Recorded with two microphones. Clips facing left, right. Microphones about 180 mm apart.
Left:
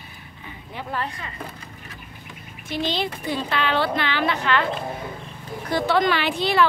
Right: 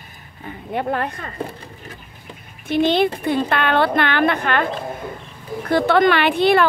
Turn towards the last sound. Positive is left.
turn(degrees=-60)  # may be behind; listen again after turning